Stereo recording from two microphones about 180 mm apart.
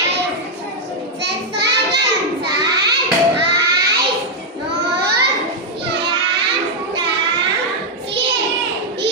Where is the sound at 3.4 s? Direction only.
70° right (ahead or behind).